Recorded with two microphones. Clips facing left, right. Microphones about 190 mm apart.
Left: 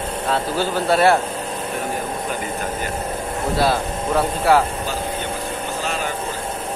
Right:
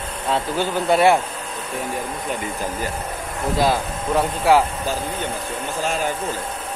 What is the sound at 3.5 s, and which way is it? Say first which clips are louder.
Speech: even; 15° right (ahead or behind).